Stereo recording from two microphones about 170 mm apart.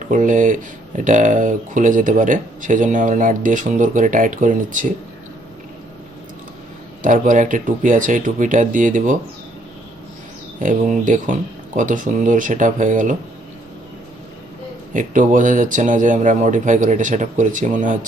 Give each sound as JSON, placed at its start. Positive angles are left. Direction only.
{"t": 0.1, "sound": "speech", "side_deg": -50}
{"t": 7.0, "sound": "speech", "side_deg": -50}
{"t": 10.6, "sound": "speech", "side_deg": -50}
{"t": 14.9, "sound": "speech", "side_deg": -50}